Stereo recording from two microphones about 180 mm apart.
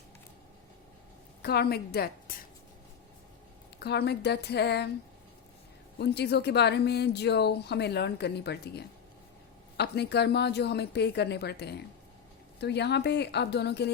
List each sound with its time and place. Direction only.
1.4 s a woman's voice: 60° left (ahead or behind)
3.8 s speech: 65° left (ahead or behind)
6.0 s speech: 65° left (ahead or behind)